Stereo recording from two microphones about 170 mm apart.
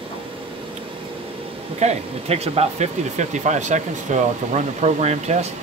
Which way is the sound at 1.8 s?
40° right (ahead or behind).